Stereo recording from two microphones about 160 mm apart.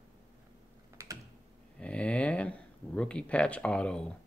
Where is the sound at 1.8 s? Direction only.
5° left (ahead or behind).